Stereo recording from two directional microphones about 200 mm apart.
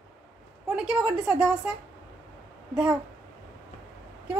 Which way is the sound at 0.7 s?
5° right (ahead or behind).